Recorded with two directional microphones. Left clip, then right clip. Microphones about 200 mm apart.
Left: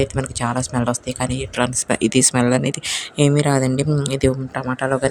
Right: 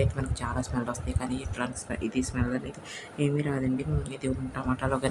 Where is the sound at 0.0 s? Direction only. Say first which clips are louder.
Left 10 dB; 45° left (ahead or behind).